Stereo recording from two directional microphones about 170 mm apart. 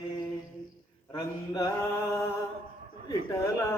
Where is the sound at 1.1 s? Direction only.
20° left (ahead or behind).